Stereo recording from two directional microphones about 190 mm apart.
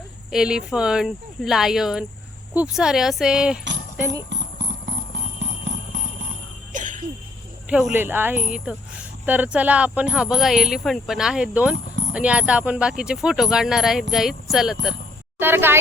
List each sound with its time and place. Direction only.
0.3 s speech: 5° right (ahead or behind)
6.7 s a sound: 45° right (ahead or behind)
7.7 s speech: 5° right (ahead or behind)